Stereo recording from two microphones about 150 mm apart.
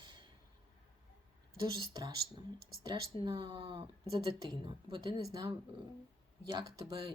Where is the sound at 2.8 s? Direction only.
30° right (ahead or behind).